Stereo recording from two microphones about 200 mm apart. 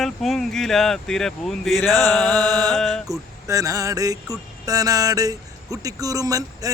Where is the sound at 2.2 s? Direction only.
20° right (ahead or behind).